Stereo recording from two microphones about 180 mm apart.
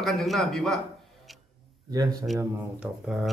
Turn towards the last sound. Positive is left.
turn(degrees=0)  # may be behind; listen again after turning